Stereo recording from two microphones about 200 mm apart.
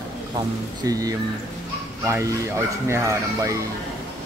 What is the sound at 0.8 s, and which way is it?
Speech, 20° right (ahead or behind).